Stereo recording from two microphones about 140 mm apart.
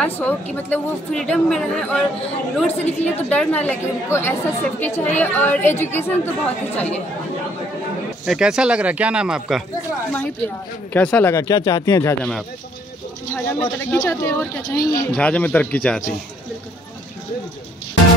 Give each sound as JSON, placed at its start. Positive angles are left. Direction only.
{"t": 0.0, "sound": "a woman's voice", "side_deg": 10}
{"t": 8.3, "sound": "speech", "side_deg": -5}
{"t": 10.9, "sound": "speech", "side_deg": 10}
{"t": 13.3, "sound": "a woman's voice", "side_deg": 15}
{"t": 14.8, "sound": "speech", "side_deg": 85}
{"t": 15.1, "sound": "a woman's voice", "side_deg": 10}